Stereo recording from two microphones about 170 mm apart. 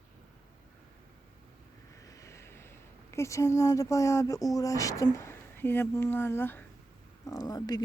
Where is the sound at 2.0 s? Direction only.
20° left (ahead or behind).